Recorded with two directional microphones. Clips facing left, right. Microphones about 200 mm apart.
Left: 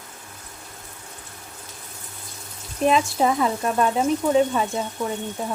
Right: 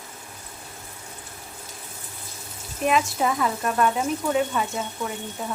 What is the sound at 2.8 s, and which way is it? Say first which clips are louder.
Speech: left 3 dB; 30° left (ahead or behind).